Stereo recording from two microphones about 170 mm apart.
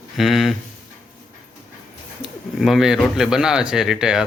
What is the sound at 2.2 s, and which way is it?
Speech, centre (ahead or behind).